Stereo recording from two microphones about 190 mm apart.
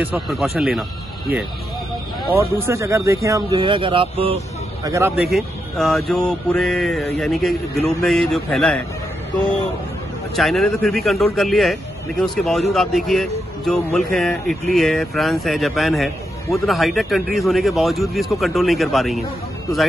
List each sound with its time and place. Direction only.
0.0 s speech: centre (ahead or behind)
2.6 s speech: 15° right (ahead or behind)
4.8 s speech: 15° right (ahead or behind)
5.1 s speech: centre (ahead or behind)
10.3 s speech: centre (ahead or behind)